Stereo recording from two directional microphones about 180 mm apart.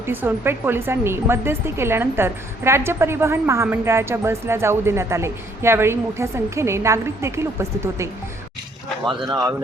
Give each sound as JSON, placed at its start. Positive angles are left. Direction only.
{"t": 0.0, "sound": "speech", "side_deg": -10}